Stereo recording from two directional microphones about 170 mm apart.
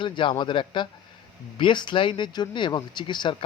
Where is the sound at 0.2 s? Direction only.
30° left (ahead or behind).